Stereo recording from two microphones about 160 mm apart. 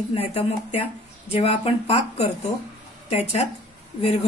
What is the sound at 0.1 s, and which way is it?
A woman's voice, 40° left (ahead or behind).